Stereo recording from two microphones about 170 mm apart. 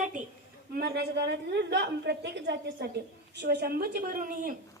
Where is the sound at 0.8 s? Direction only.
70° right (ahead or behind).